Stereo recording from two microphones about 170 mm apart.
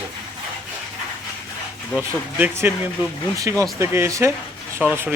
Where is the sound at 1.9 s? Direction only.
10° right (ahead or behind).